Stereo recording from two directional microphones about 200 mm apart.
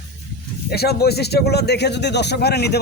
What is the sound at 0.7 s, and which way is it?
Speech, 50° left (ahead or behind).